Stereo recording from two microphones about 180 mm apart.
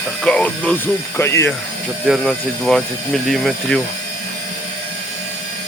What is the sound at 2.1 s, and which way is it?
Speech, centre (ahead or behind).